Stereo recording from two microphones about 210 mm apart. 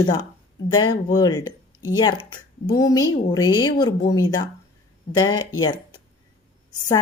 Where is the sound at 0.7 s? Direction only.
20° left (ahead or behind).